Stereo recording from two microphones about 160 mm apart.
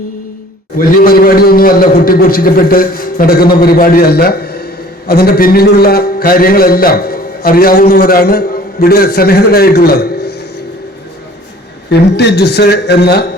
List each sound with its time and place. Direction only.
0.8 s a man's voice: 65° left (ahead or behind); by 10.3 s 90° left
11.9 s a man's voice: 90° left